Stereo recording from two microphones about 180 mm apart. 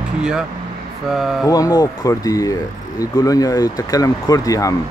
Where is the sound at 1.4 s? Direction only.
20° left (ahead or behind).